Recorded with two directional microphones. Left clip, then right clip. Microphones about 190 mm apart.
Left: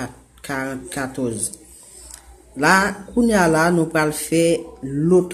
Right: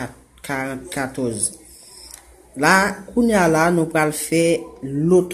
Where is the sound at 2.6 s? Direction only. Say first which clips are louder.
Even; 5° right (ahead or behind).